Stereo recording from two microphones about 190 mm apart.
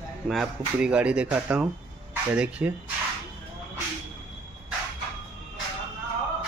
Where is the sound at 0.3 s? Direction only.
5° right (ahead or behind).